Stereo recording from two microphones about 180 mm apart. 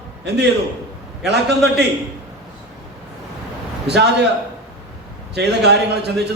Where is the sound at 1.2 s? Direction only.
70° right (ahead or behind).